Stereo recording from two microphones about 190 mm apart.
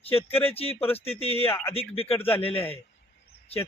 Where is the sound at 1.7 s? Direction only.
30° left (ahead or behind).